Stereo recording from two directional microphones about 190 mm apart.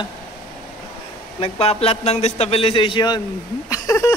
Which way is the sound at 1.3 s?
30° left (ahead or behind).